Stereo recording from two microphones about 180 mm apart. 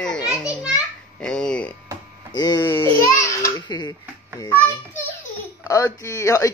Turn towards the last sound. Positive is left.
turn(degrees=15)  # may be behind; listen again after turning